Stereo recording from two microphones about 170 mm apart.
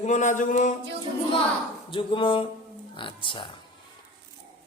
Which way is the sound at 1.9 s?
30° left (ahead or behind).